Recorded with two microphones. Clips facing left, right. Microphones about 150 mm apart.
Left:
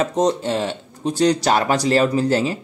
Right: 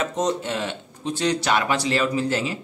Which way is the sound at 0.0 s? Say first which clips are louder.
Left 5 dB; 35° left (ahead or behind).